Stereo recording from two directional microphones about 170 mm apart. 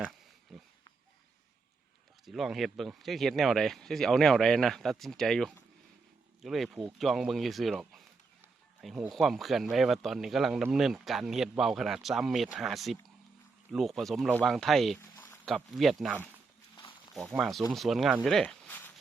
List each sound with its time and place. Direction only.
0.5 s a sound: centre (ahead or behind)
2.2 s speech: centre (ahead or behind)
17.3 s speech: centre (ahead or behind)